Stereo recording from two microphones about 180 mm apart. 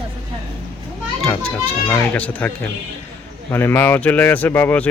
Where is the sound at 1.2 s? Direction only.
5° left (ahead or behind).